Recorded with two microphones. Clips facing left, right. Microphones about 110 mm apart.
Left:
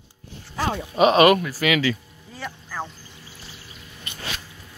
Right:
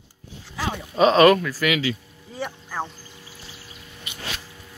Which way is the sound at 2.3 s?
15° right (ahead or behind).